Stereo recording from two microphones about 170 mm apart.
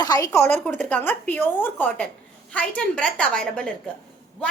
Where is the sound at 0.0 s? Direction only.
20° left (ahead or behind).